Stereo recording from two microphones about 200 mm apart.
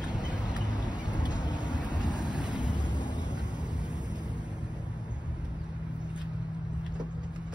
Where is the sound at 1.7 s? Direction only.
40° right (ahead or behind).